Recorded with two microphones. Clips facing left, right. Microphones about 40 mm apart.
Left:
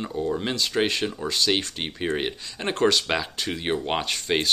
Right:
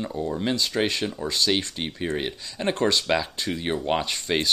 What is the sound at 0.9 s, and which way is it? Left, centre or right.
Speech, left.